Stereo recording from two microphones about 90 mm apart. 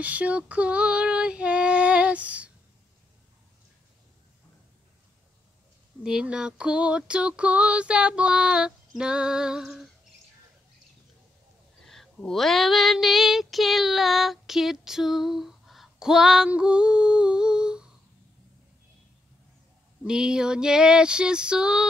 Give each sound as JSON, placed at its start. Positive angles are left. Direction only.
{"t": 0.0, "sound": "female singing", "side_deg": -15}
{"t": 6.0, "sound": "female singing", "side_deg": -10}
{"t": 11.8, "sound": "a sound", "side_deg": 5}
{"t": 12.3, "sound": "child singing", "side_deg": 5}
{"t": 20.1, "sound": "female singing", "side_deg": -10}